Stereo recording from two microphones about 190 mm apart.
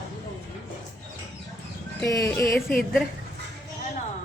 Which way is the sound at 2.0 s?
15° left (ahead or behind).